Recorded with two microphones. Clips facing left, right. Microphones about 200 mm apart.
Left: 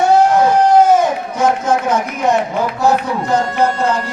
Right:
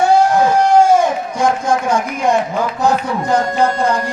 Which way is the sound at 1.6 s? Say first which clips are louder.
Even; 10° right (ahead or behind).